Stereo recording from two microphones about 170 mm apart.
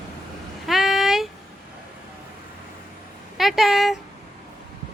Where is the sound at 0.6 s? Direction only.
Centre (ahead or behind).